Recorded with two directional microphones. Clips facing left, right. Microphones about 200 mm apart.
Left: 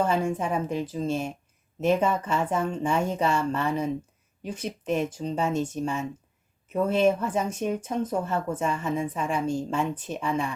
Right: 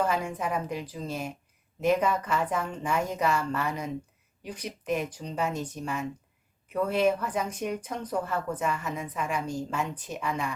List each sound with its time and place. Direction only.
0.0 s speech: 30° left (ahead or behind)